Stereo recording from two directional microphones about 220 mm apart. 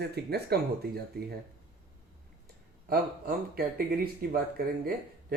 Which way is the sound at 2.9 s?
40° right (ahead or behind).